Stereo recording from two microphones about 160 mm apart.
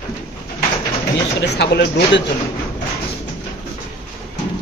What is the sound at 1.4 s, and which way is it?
Speech, 90° left.